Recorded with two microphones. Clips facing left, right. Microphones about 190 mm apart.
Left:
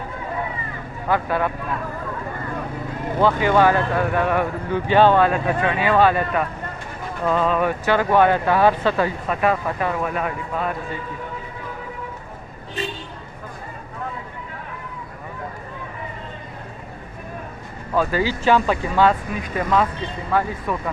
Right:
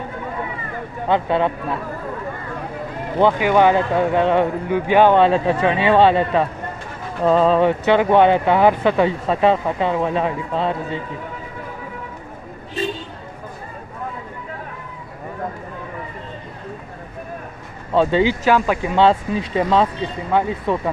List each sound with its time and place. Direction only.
1.0 s speech: 25° right (ahead or behind)
3.2 s speech: 15° right (ahead or behind)
17.9 s speech: 25° right (ahead or behind)
18.4 s speech: 10° right (ahead or behind)
18.9 s speech: 25° right (ahead or behind)